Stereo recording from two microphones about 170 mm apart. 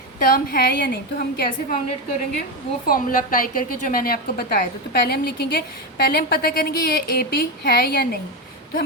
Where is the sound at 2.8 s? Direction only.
55° left (ahead or behind).